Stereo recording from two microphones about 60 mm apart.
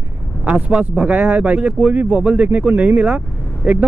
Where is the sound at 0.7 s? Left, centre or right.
Centre.